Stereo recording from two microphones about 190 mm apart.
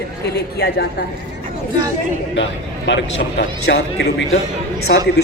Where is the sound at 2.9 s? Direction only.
70° left (ahead or behind).